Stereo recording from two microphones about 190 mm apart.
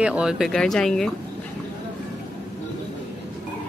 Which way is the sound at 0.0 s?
5° right (ahead or behind).